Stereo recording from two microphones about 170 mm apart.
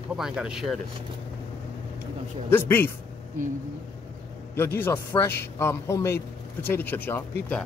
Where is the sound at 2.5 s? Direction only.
10° left (ahead or behind).